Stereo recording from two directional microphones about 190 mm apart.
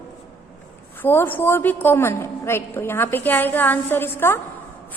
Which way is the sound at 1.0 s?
10° left (ahead or behind).